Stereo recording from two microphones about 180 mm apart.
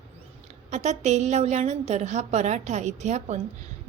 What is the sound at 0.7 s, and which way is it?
A woman's voice, 40° right (ahead or behind).